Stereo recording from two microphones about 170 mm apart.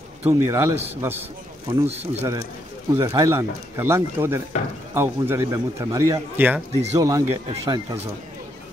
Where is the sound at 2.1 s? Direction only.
15° right (ahead or behind).